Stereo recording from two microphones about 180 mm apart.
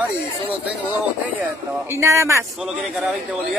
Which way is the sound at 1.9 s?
15° right (ahead or behind).